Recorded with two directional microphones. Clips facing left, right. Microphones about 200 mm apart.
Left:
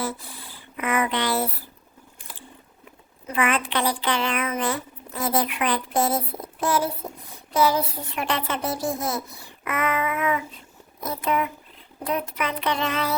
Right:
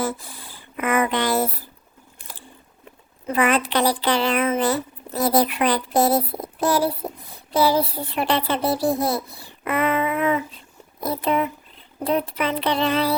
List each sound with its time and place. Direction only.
0.0 s speech: 45° right (ahead or behind)
2.1 s biting: 40° right (ahead or behind)
3.2 s speech: 40° right (ahead or behind)